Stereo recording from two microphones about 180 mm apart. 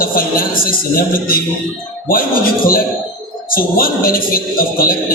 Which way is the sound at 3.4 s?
55° left (ahead or behind).